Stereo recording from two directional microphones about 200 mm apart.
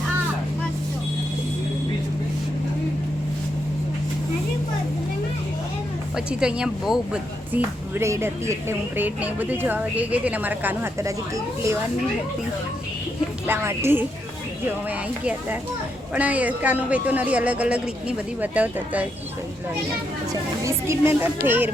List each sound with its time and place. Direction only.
6.1 s a woman's voice: 5° right (ahead or behind)
13.5 s a woman's voice: 10° right (ahead or behind)
20.7 s a woman's voice: 15° right (ahead or behind)